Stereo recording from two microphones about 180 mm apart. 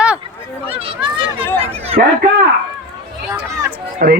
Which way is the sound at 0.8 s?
30° right (ahead or behind).